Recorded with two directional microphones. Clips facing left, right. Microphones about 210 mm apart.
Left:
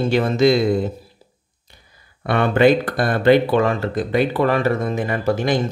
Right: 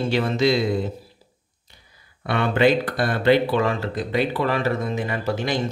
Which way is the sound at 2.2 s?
50° left (ahead or behind).